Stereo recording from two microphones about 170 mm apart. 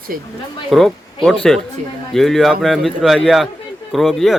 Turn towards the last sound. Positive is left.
turn(degrees=0)  # may be behind; listen again after turning